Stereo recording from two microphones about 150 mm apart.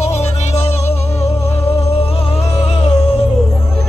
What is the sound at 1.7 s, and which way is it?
Music, 40° left (ahead or behind).